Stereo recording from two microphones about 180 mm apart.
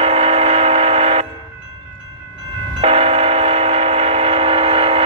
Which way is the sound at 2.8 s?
35° right (ahead or behind).